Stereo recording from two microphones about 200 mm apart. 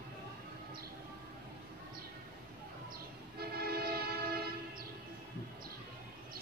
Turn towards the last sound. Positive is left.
turn(degrees=-50)  # may be behind; listen again after turning